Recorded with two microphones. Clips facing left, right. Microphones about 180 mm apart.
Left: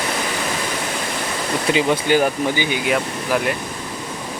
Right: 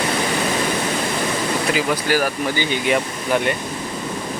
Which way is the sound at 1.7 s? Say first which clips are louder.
Left 6 dB; 25° left (ahead or behind).